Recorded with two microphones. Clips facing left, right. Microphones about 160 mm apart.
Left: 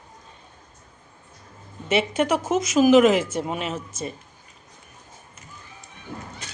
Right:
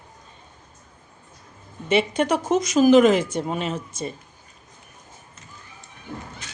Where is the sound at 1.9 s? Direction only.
5° left (ahead or behind).